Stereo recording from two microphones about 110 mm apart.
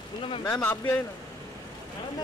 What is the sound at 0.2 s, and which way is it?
Speech, 55° left (ahead or behind).